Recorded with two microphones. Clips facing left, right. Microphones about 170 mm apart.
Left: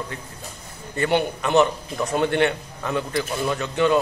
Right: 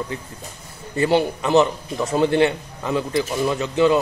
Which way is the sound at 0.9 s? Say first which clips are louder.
Right 3 dB; 25° right (ahead or behind).